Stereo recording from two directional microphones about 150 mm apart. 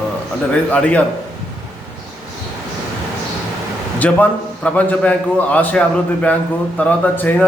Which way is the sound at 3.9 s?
10° left (ahead or behind).